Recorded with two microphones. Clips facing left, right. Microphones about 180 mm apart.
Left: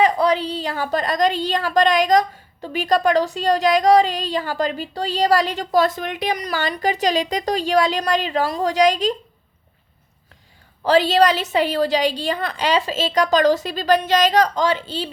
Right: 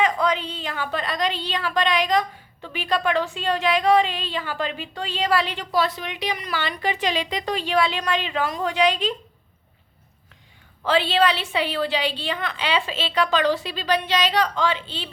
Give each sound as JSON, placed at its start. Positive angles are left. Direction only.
{"t": 0.0, "sound": "a woman's voice", "side_deg": 35}
{"t": 10.8, "sound": "a woman's voice", "side_deg": 40}